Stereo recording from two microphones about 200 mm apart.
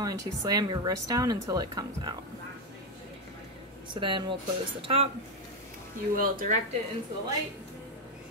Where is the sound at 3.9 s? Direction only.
25° right (ahead or behind).